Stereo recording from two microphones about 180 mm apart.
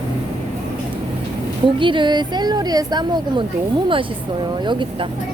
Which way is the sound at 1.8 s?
25° right (ahead or behind).